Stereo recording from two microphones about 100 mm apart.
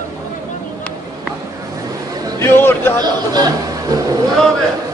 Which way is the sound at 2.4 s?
20° left (ahead or behind).